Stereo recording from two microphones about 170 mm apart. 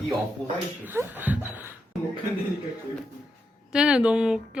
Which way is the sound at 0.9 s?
10° right (ahead or behind).